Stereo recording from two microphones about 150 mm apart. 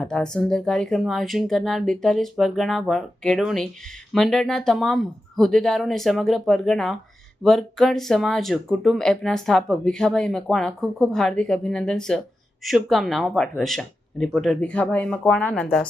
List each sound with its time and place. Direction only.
0.0 s speech: 5° left (ahead or behind)